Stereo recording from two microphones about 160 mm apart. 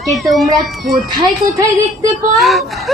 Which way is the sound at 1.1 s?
20° right (ahead or behind).